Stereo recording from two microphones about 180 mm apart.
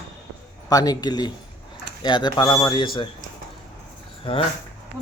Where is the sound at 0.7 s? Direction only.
20° left (ahead or behind).